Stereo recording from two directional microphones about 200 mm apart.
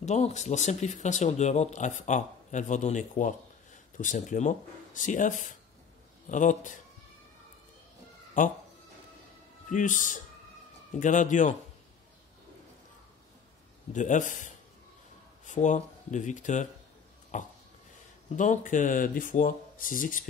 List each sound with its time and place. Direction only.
0.0 s speech: 35° left (ahead or behind)
8.4 s speech: 45° left (ahead or behind)
9.7 s speech: 40° left (ahead or behind)
13.9 s speech: 40° left (ahead or behind)